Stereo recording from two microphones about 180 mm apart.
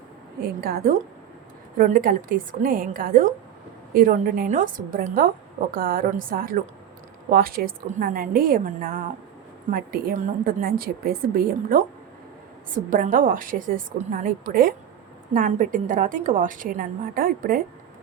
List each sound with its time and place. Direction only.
0.4 s a woman's voice: 60° right (ahead or behind)
1.8 s a woman's voice: 50° right (ahead or behind)